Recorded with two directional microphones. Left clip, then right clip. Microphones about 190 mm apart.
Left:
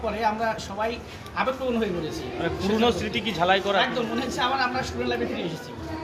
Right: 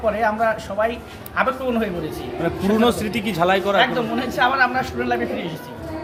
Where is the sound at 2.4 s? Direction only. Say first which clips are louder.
Right 5 dB; 65° right (ahead or behind).